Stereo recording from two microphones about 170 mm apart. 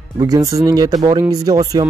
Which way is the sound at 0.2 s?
20° right (ahead or behind).